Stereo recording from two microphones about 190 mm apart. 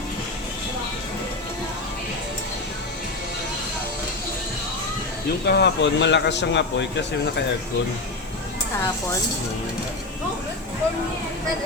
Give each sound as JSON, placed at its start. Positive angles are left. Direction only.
{"t": 5.5, "sound": "speech", "side_deg": 60}